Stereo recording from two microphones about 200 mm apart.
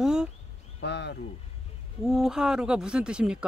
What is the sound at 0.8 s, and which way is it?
Speech, 55° left (ahead or behind).